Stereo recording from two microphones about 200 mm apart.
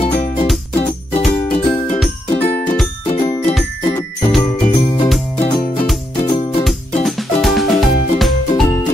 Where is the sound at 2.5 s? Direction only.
5° left (ahead or behind).